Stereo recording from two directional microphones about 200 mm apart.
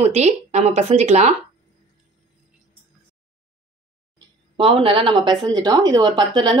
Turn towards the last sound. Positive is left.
turn(degrees=-20)  # may be behind; listen again after turning